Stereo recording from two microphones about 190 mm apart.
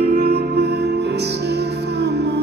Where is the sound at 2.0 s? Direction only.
60° right (ahead or behind).